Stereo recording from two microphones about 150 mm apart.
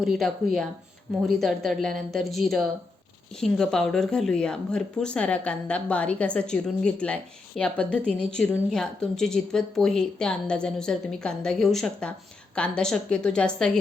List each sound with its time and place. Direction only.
0.0 s speech: centre (ahead or behind)